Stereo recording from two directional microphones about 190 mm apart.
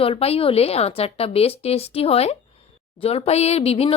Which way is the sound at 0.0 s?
30° left (ahead or behind).